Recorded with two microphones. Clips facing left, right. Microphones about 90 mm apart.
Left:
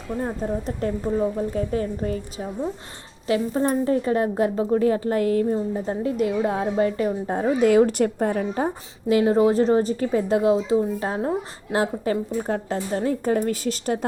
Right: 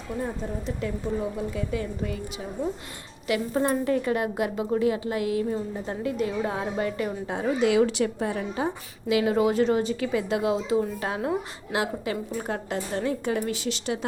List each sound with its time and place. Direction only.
0.2 s a woman's voice: 40° left (ahead or behind)
3.2 s a woman's voice: 35° left (ahead or behind)